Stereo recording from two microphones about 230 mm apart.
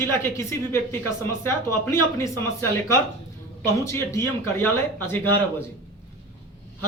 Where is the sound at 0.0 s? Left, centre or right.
Centre.